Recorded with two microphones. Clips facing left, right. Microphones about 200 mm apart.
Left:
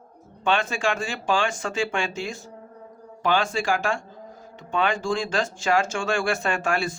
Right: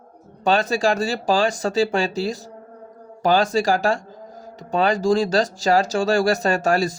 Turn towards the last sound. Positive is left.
turn(degrees=-40)  # may be behind; listen again after turning